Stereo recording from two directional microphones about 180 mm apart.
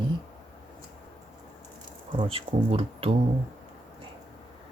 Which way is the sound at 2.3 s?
30° right (ahead or behind).